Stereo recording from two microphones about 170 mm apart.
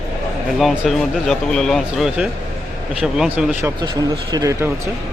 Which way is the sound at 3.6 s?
25° right (ahead or behind).